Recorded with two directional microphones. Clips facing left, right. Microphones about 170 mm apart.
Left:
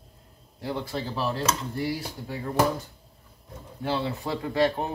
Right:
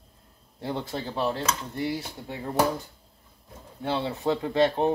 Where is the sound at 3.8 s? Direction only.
20° right (ahead or behind).